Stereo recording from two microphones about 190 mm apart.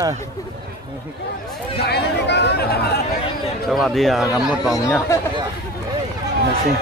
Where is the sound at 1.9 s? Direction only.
60° left (ahead or behind).